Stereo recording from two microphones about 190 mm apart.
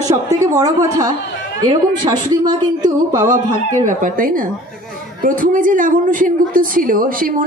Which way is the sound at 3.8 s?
45° right (ahead or behind).